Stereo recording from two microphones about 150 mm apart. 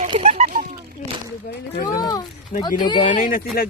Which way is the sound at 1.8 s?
25° left (ahead or behind).